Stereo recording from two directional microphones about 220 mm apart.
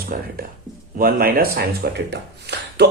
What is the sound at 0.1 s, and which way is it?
A man's voice, 40° right (ahead or behind).